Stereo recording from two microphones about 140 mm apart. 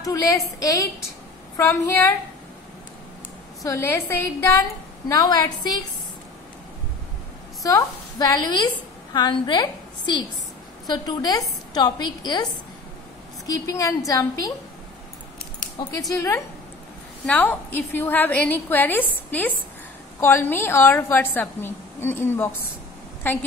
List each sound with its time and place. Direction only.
0.0 s a woman's voice: 25° left (ahead or behind)
3.6 s a woman's voice: 20° left (ahead or behind)
7.6 s a woman's voice: 25° left (ahead or behind)
13.5 s a woman's voice: 25° left (ahead or behind)
15.8 s a woman's voice: 25° left (ahead or behind)
17.3 s a woman's voice: 10° left (ahead or behind)